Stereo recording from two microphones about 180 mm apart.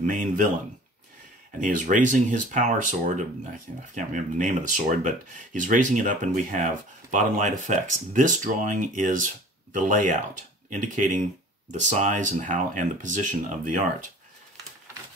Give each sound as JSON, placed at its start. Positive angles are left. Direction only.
{"t": 0.0, "sound": "speech", "side_deg": -45}
{"t": 1.6, "sound": "speech", "side_deg": -45}